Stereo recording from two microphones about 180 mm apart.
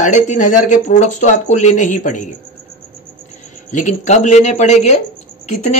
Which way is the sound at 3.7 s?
40° left (ahead or behind).